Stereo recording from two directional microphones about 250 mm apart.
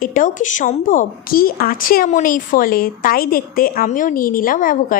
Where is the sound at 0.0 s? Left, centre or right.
Left.